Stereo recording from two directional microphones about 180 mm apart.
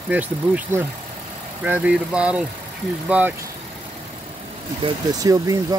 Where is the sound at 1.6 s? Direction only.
5° right (ahead or behind).